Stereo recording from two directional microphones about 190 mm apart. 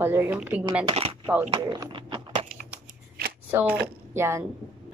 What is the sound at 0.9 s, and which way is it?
Speech, 30° right (ahead or behind).